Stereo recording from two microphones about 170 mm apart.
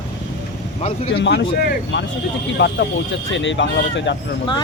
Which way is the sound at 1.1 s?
85° left.